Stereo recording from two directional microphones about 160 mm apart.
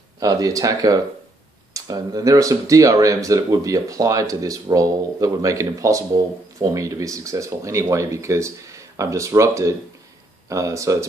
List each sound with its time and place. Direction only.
0.2 s speech: 20° right (ahead or behind)